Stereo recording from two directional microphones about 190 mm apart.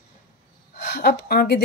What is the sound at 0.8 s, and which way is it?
Speech, 55° left (ahead or behind).